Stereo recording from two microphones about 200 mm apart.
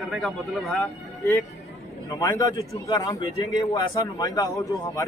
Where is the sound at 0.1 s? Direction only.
Centre (ahead or behind).